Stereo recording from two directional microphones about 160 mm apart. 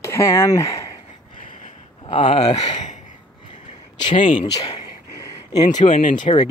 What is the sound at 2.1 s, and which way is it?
Speech, 35° left (ahead or behind).